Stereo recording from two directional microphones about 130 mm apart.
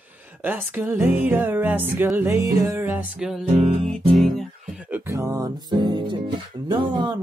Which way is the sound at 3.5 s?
50° right (ahead or behind).